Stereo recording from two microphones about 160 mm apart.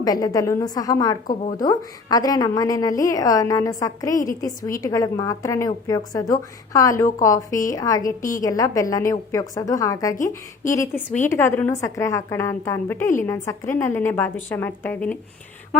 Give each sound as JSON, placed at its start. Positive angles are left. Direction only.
{"t": 0.0, "sound": "a woman's voice", "side_deg": 25}
{"t": 10.2, "sound": "a woman's voice", "side_deg": 55}
{"t": 10.8, "sound": "a woman's voice", "side_deg": 10}